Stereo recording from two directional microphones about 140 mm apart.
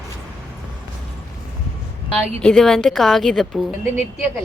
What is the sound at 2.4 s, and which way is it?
Speech, 5° left (ahead or behind).